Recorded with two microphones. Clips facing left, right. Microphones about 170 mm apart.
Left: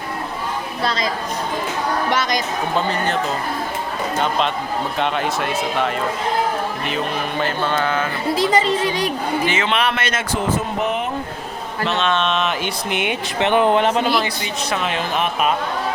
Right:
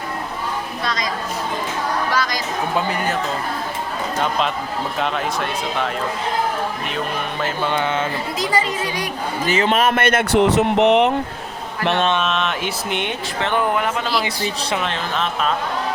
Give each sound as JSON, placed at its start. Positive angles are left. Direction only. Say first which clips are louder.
{"t": 0.8, "sound": "speech", "louder": "left 4 dB", "side_deg": 30}
{"t": 2.7, "sound": "speech", "louder": "left 1 dB", "side_deg": -10}
{"t": 4.2, "sound": "speech", "louder": "left 1 dB", "side_deg": 0}
{"t": 7.6, "sound": "speech", "louder": "right 1 dB", "side_deg": -15}
{"t": 8.4, "sound": "speech", "louder": "left 4 dB", "side_deg": 25}
{"t": 9.5, "sound": "speech", "louder": "right 3 dB", "side_deg": -40}
{"t": 12.1, "sound": "speech", "louder": "left 1 dB", "side_deg": 0}
{"t": 13.4, "sound": "speech", "louder": "left 5 dB", "side_deg": 20}
{"t": 14.8, "sound": "speech", "louder": "left 2 dB", "side_deg": 15}